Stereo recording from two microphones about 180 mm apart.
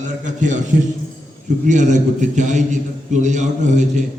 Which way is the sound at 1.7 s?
40° right (ahead or behind).